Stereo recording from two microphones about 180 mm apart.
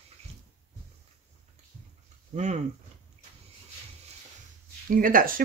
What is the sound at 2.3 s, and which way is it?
Speech, 40° right (ahead or behind).